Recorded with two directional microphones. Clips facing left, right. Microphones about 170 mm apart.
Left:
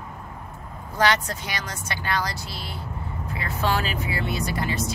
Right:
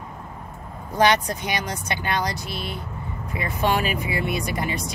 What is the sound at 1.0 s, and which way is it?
Speech, 15° right (ahead or behind).